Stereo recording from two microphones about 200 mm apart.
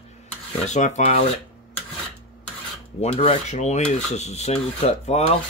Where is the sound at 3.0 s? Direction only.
30° left (ahead or behind).